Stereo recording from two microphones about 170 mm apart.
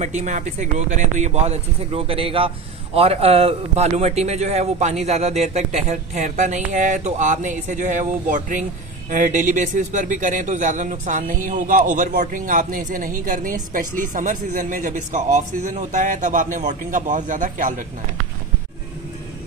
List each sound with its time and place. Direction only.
0.0 s a man's voice: 45° right (ahead or behind)